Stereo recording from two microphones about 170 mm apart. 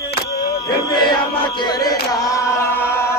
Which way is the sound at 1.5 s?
25° left (ahead or behind).